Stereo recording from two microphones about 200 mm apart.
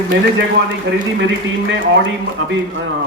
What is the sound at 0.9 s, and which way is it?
Speech, 60° right (ahead or behind).